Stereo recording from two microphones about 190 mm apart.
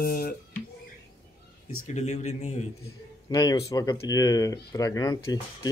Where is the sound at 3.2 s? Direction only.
20° left (ahead or behind).